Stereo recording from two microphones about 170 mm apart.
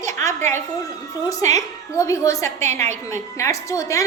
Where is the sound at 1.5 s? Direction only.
15° left (ahead or behind).